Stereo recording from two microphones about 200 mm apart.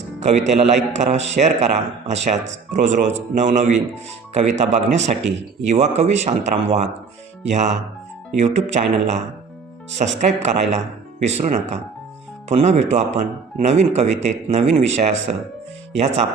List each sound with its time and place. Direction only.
0.2 s speech: 35° right (ahead or behind)